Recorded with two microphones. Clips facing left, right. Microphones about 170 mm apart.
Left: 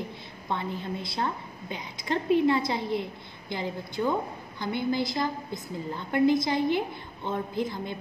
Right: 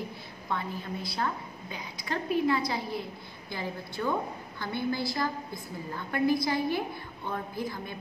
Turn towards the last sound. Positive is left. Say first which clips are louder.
# left 4 dB
turn(degrees=20)  # may be behind; listen again after turning